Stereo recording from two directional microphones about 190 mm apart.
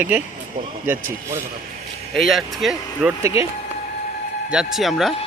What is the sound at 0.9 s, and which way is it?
Speech, 10° right (ahead or behind).